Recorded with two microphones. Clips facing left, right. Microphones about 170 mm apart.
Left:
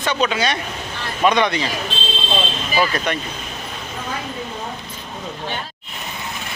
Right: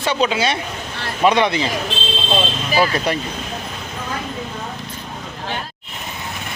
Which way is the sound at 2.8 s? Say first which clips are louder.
Right 2 dB; 30° right (ahead or behind).